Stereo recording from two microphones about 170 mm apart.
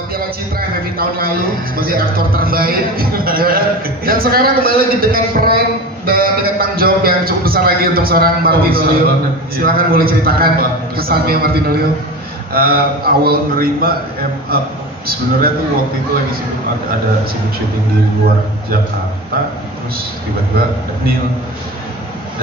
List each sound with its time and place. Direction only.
0.1 s a man's voice: 60° right (ahead or behind)